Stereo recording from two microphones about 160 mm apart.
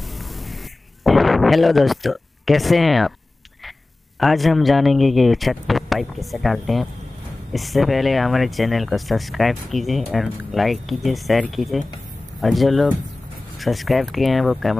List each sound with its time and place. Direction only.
0.2 s a sound: centre (ahead or behind)
1.0 s speech: centre (ahead or behind)
4.2 s speech: centre (ahead or behind)